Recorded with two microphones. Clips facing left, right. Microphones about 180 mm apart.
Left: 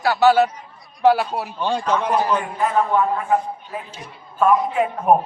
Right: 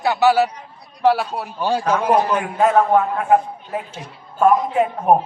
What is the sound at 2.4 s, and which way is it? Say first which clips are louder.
A man's voice: right 4 dB; 75° right (ahead or behind).